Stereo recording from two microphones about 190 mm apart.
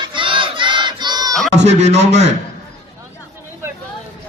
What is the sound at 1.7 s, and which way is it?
Speech, 35° right (ahead or behind).